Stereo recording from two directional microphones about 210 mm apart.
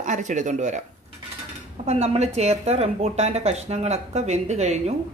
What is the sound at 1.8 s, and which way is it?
Speech, 30° right (ahead or behind).